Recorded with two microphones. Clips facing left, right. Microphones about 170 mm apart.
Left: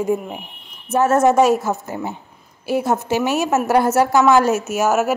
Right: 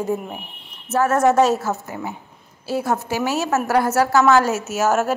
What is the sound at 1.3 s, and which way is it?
A woman's voice, 10° left (ahead or behind).